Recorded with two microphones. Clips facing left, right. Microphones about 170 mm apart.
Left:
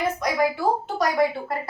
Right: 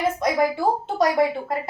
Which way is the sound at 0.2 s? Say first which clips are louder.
Right 2 dB; 25° right (ahead or behind).